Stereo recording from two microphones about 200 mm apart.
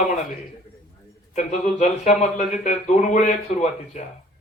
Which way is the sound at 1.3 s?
35° left (ahead or behind).